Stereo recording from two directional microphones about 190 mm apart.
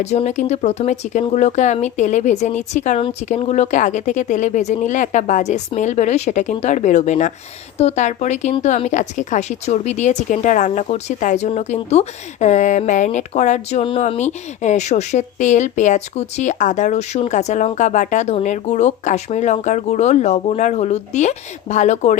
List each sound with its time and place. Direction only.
0.0 s a woman's voice: 35° left (ahead or behind)